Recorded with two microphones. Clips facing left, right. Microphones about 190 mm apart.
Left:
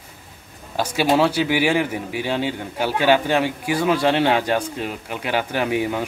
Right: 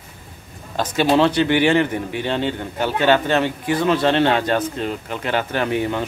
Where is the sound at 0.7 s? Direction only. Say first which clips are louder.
Right 2 dB; 10° left (ahead or behind).